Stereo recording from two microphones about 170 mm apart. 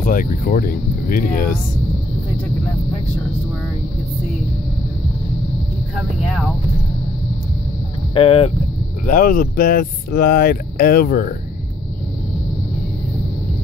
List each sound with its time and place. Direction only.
0.0 s speech: 55° left (ahead or behind)
8.1 s speech: 35° left (ahead or behind)
9.0 s speech: 55° left (ahead or behind)